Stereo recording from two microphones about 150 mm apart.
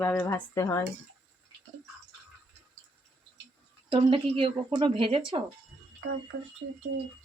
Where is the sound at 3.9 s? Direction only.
35° right (ahead or behind).